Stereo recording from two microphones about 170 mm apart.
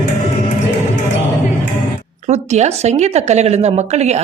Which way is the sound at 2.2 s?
40° right (ahead or behind).